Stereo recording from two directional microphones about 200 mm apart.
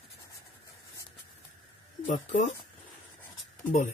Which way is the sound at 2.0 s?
40° left (ahead or behind).